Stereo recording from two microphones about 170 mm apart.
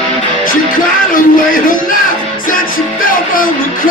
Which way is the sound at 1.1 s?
55° left (ahead or behind).